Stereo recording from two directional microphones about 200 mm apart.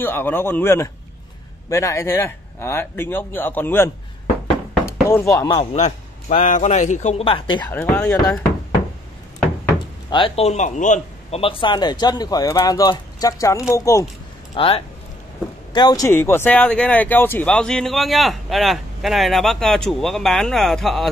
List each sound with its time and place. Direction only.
0.0 s speech: 10° left (ahead or behind)
5.0 s speech: 15° left (ahead or behind)
5.6 s a man's voice: 35° left (ahead or behind)
7.6 s speech: 5° left (ahead or behind)
10.0 s a man's voice: 25° left (ahead or behind)
14.5 s speech: 25° left (ahead or behind); by 21.1 s centre (ahead or behind)